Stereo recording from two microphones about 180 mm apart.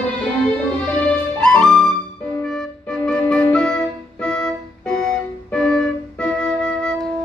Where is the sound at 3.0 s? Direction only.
5° left (ahead or behind).